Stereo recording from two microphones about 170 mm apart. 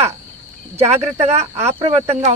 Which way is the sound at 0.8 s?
35° right (ahead or behind).